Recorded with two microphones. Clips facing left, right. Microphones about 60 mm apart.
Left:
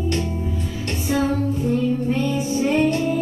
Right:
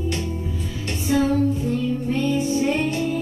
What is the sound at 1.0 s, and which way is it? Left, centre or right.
Music, centre.